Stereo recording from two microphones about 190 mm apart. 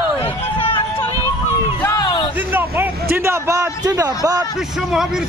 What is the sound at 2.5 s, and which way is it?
Vehicle, 10° right (ahead or behind).